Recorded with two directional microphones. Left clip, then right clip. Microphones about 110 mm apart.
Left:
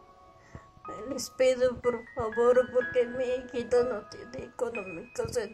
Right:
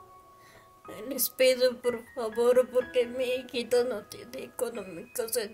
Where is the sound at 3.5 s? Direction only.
55° right (ahead or behind).